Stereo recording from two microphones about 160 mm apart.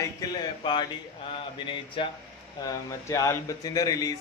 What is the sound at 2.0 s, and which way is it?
Speech, 30° left (ahead or behind).